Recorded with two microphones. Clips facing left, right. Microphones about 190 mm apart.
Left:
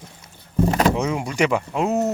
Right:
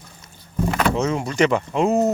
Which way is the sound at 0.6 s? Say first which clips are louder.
Left 2 dB; 30° left (ahead or behind).